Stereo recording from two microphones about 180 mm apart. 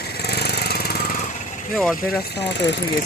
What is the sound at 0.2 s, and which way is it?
Lawn mower, 65° left (ahead or behind).